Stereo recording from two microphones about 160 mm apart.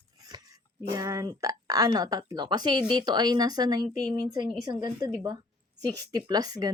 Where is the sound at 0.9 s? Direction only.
20° right (ahead or behind).